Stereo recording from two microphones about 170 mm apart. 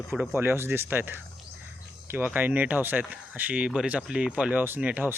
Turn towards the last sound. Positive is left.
turn(degrees=-10)  # may be behind; listen again after turning